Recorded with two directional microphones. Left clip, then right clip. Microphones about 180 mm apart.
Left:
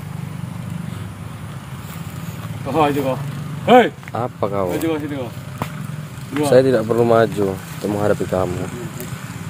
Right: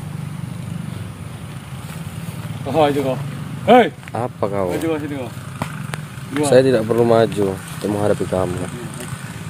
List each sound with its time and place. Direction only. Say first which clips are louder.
2.7 s speech: right 1 dB; 25° right (ahead or behind)
3.6 s speech: even; 10° right (ahead or behind)
6.4 s speech: even; 10° right (ahead or behind)